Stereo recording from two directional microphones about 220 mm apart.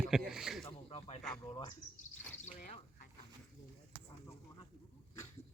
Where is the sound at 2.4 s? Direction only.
30° left (ahead or behind).